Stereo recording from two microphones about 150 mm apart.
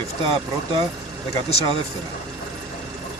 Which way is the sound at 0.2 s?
35° right (ahead or behind).